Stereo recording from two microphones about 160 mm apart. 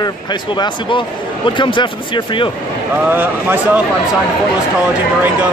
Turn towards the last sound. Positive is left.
turn(degrees=-10)  # may be behind; listen again after turning